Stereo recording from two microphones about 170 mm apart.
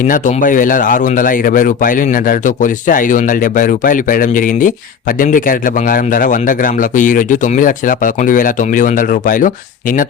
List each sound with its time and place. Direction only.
0.1 s speech: 50° left (ahead or behind)